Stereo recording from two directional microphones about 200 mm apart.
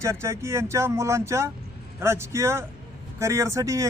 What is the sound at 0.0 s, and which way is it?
A man's voice, 15° right (ahead or behind).